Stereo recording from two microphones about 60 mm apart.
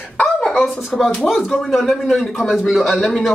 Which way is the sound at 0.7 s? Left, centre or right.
Centre.